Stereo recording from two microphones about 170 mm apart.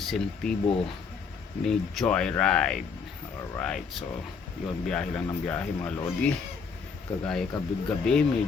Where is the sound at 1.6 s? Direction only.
Centre (ahead or behind).